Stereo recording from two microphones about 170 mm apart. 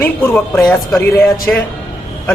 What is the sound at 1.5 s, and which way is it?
Speech, 10° left (ahead or behind).